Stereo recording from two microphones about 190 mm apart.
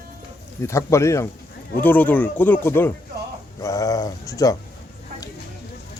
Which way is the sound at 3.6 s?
20° left (ahead or behind).